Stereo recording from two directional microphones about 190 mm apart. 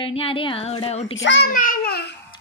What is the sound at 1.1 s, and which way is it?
Speech, 70° left (ahead or behind).